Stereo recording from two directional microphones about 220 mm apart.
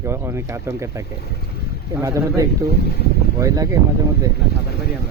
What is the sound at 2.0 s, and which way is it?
Speech, 15° right (ahead or behind).